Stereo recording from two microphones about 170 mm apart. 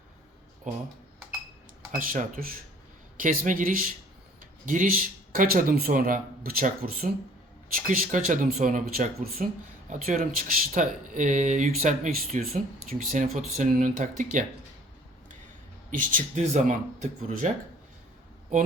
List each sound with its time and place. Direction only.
2.0 s speech: 55° right (ahead or behind)
15.9 s speech: 50° right (ahead or behind)